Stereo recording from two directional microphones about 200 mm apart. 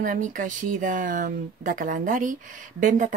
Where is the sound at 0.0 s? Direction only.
40° right (ahead or behind).